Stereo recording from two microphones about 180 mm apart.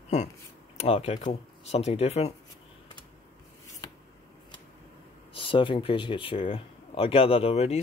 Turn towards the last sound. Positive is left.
turn(degrees=35)  # may be behind; listen again after turning